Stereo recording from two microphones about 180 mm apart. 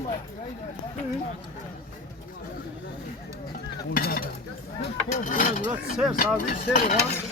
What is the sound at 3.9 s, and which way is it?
Speech, 55° left (ahead or behind).